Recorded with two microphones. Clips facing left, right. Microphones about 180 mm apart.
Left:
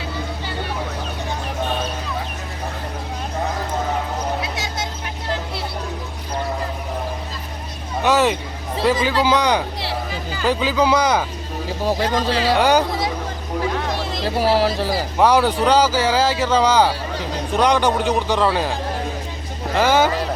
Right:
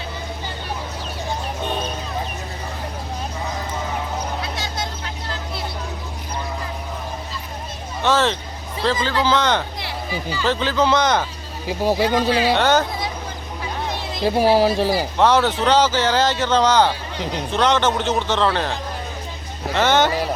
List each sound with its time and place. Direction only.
8.0 s speech: 15° left (ahead or behind)
12.0 s speech: 35° left (ahead or behind)
12.5 s speech: 10° left (ahead or behind)
14.3 s speech: 15° right (ahead or behind)
15.2 s speech: 10° left (ahead or behind)